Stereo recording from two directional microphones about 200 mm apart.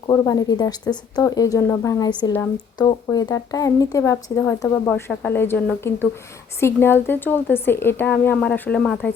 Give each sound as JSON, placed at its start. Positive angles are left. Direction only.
{"t": 0.1, "sound": "a woman's voice", "side_deg": 15}